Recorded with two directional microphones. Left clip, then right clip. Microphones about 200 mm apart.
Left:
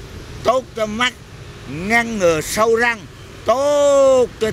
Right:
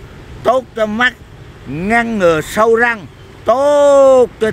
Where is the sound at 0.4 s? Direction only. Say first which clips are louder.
Right 4 dB; 25° right (ahead or behind).